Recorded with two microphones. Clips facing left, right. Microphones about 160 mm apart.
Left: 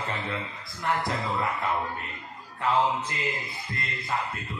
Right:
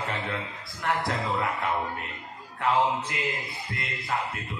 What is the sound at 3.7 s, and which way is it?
Speech, centre (ahead or behind).